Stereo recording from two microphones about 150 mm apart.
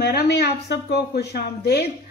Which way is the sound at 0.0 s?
90° left.